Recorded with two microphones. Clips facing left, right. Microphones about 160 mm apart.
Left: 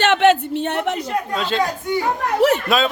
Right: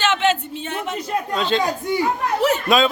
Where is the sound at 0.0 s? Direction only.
60° left (ahead or behind).